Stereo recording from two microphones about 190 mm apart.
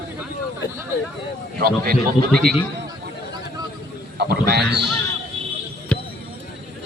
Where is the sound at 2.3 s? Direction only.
Centre (ahead or behind).